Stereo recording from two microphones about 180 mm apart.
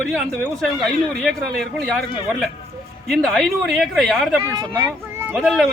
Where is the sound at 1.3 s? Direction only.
Centre (ahead or behind).